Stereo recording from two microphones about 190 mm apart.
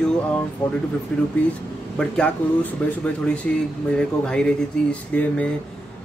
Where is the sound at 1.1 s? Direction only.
5° left (ahead or behind).